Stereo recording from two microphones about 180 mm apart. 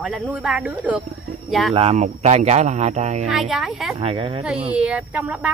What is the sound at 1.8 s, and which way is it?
Speech, 35° right (ahead or behind).